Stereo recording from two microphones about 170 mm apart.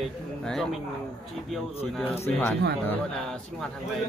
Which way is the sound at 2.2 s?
10° left (ahead or behind).